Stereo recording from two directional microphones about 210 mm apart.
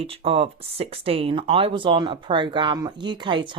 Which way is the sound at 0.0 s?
25° right (ahead or behind).